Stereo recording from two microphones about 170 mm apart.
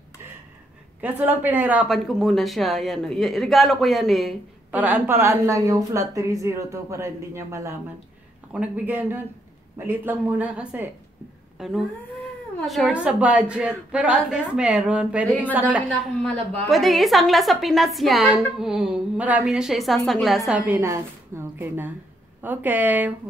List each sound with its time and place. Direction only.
1.0 s a woman's voice: 10° right (ahead or behind)
4.7 s a woman's voice: 10° right (ahead or behind)